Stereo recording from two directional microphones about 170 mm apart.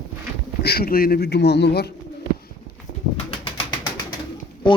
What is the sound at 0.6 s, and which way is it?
A man's voice, 65° left (ahead or behind).